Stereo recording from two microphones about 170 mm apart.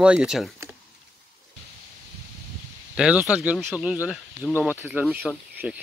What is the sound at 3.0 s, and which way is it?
Speech, 5° right (ahead or behind).